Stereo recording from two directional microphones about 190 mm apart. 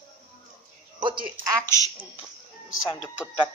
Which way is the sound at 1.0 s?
25° right (ahead or behind).